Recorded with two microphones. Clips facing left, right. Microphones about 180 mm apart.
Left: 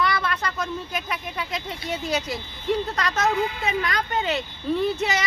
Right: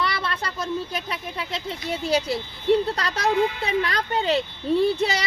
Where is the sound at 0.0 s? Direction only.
30° right (ahead or behind).